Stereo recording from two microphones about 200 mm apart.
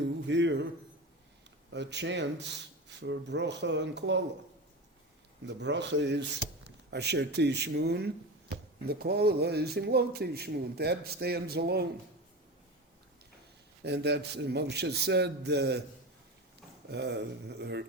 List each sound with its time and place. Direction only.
0.3 s a man's voice: 65° right (ahead or behind)
1.7 s a man's voice: 60° right (ahead or behind)
5.5 s a man's voice: 60° right (ahead or behind)
13.8 s a man's voice: 55° right (ahead or behind)
16.9 s a man's voice: 55° right (ahead or behind)